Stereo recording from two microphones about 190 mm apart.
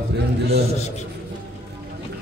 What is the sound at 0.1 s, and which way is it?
Speech, 60° right (ahead or behind).